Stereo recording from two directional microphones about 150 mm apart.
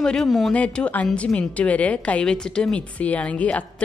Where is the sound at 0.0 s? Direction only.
5° left (ahead or behind).